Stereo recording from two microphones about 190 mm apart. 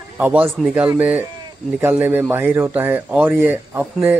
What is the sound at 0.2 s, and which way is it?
Speech, 5° right (ahead or behind).